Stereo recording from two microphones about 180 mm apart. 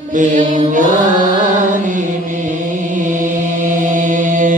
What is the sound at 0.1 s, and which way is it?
Mantra, 45° right (ahead or behind).